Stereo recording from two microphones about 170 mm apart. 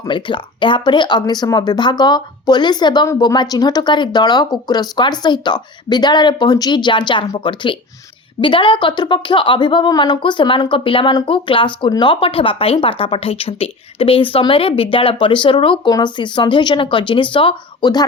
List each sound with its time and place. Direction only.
0.1 s speech: 30° left (ahead or behind)